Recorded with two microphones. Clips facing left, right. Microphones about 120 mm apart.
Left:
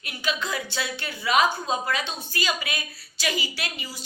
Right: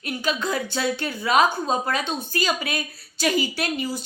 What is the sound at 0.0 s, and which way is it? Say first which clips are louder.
A woman's voice: right 4 dB; 45° right (ahead or behind).